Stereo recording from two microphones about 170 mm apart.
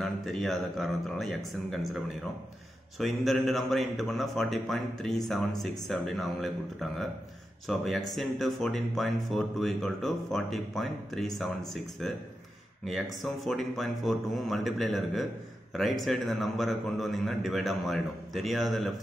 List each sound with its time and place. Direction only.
0.0 s speech: centre (ahead or behind)
3.0 s speech: centre (ahead or behind)